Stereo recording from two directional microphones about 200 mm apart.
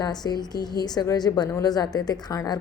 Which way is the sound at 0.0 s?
20° left (ahead or behind).